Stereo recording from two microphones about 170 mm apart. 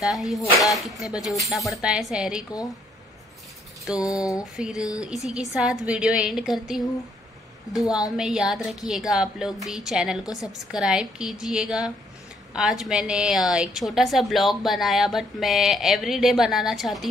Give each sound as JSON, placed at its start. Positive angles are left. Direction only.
{"t": 0.0, "sound": "a woman's voice", "side_deg": 0}
{"t": 0.4, "sound": "speech", "side_deg": 20}
{"t": 1.5, "sound": "a woman's voice", "side_deg": 0}
{"t": 4.0, "sound": "speech", "side_deg": 20}
{"t": 4.6, "sound": "a woman's voice", "side_deg": -5}
{"t": 8.2, "sound": "a woman's voice", "side_deg": -5}